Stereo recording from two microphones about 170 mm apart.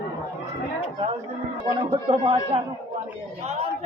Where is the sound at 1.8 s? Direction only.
30° right (ahead or behind).